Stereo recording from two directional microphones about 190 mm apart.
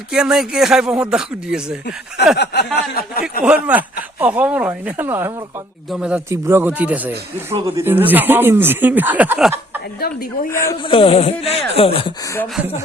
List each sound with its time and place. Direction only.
0.1 s speech: 5° right (ahead or behind)
2.3 s speech: 60° left (ahead or behind)
3.4 s speech: 5° right (ahead or behind)
10.5 s speech: 15° left (ahead or behind)
10.8 s speech: 30° left (ahead or behind)